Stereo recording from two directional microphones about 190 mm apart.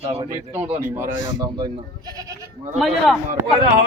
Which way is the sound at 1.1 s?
75° left (ahead or behind).